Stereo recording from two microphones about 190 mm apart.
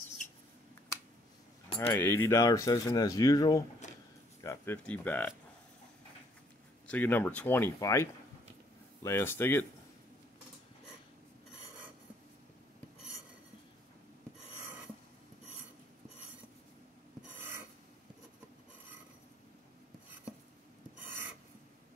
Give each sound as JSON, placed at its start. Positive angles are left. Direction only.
{"t": 1.8, "sound": "speech", "side_deg": 10}
{"t": 3.8, "sound": "a sound", "side_deg": 40}
{"t": 4.4, "sound": "speech", "side_deg": 15}
{"t": 6.9, "sound": "speech", "side_deg": 10}